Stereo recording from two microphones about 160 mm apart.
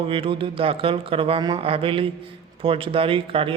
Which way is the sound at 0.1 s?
35° right (ahead or behind).